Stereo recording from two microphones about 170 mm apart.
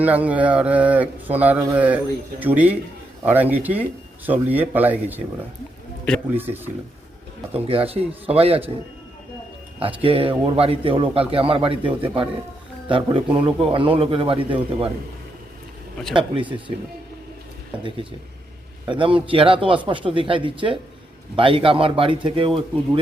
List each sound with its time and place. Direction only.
0.0 s speech: 10° right (ahead or behind)
7.5 s a man's voice: 35° right (ahead or behind)
9.8 s a man's voice: 30° right (ahead or behind)
16.1 s speech: 30° right (ahead or behind)
18.9 s a man's voice: 30° right (ahead or behind)